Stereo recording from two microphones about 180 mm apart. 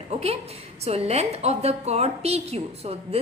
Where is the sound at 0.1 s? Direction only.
35° right (ahead or behind).